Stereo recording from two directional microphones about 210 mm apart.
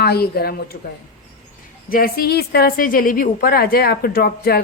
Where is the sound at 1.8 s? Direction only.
45° left (ahead or behind).